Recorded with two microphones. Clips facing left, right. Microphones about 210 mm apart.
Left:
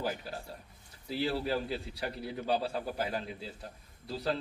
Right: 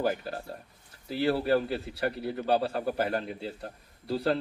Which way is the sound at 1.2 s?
60° right (ahead or behind).